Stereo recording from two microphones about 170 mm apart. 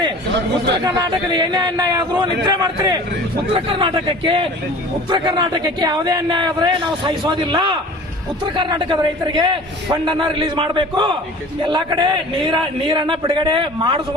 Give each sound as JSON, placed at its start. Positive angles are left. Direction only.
{"t": 0.9, "sound": "a man's voice", "side_deg": -25}